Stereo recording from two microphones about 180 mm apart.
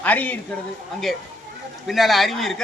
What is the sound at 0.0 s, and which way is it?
Speech, 10° left (ahead or behind).